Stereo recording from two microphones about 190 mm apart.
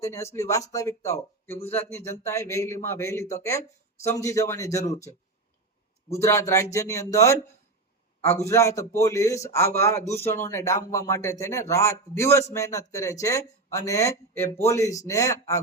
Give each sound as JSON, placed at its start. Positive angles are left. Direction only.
{"t": 0.0, "sound": "speech", "side_deg": 15}